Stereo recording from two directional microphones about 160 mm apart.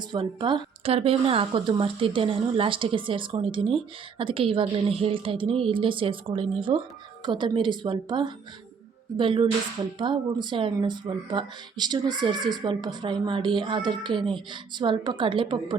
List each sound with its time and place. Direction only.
0.1 s a woman's voice: 30° right (ahead or behind)